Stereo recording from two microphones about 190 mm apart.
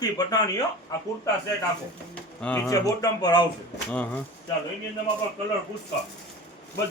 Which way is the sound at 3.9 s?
10° left (ahead or behind).